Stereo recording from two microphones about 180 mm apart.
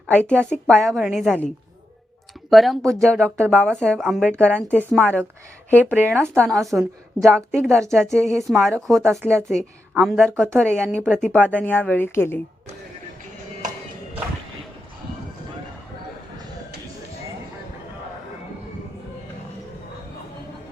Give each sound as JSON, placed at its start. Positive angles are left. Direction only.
{"t": 0.1, "sound": "a woman's voice", "side_deg": 5}
{"t": 2.5, "sound": "speech", "side_deg": 0}
{"t": 2.8, "sound": "speech", "side_deg": -15}
{"t": 3.1, "sound": "a woman's voice", "side_deg": 5}
{"t": 5.8, "sound": "speech", "side_deg": -10}
{"t": 6.3, "sound": "a woman's voice", "side_deg": 5}